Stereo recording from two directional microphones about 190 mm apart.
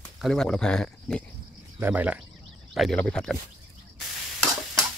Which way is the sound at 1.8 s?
10° right (ahead or behind).